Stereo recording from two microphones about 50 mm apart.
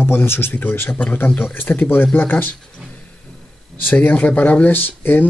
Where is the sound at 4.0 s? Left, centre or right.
Left.